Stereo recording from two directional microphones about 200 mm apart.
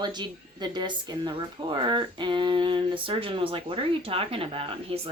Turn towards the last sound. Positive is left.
turn(degrees=-30)  # may be behind; listen again after turning